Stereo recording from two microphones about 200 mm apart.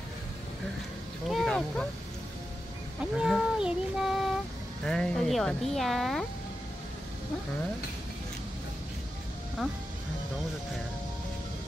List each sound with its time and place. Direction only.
1.3 s a sound: centre (ahead or behind)
3.2 s child singing: 5° right (ahead or behind)
4.8 s speech: 5° left (ahead or behind)
9.6 s speech: centre (ahead or behind)